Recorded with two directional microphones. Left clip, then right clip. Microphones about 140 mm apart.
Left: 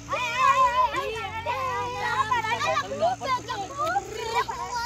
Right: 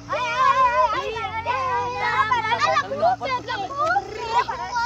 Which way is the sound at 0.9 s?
Centre (ahead or behind).